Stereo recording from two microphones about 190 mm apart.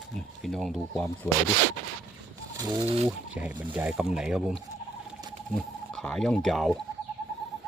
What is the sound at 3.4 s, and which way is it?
Speech, 10° right (ahead or behind).